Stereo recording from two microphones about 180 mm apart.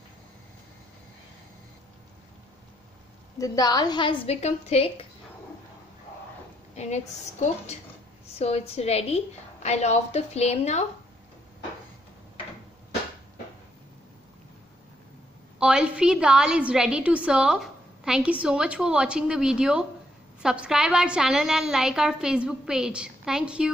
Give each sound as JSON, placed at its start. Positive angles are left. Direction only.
{"t": 3.3, "sound": "a woman's voice", "side_deg": 20}
{"t": 6.7, "sound": "a woman's voice", "side_deg": 40}
{"t": 15.6, "sound": "a woman's voice", "side_deg": -5}